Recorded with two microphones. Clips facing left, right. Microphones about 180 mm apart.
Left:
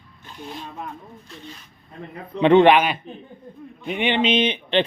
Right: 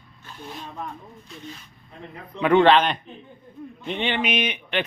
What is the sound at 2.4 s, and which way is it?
A man's voice, 20° left (ahead or behind).